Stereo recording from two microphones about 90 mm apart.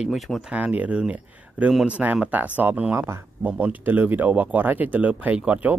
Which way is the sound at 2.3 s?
20° right (ahead or behind).